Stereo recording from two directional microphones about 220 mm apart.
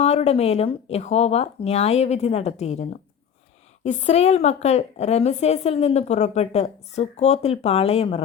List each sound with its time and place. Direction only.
0.0 s a woman's voice: 30° left (ahead or behind)